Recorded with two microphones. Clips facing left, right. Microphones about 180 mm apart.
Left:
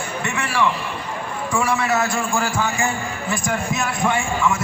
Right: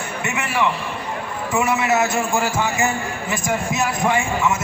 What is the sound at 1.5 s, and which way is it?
A man's voice, 20° right (ahead or behind).